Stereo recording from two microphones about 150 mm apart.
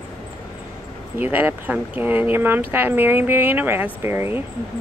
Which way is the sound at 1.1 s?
10° right (ahead or behind).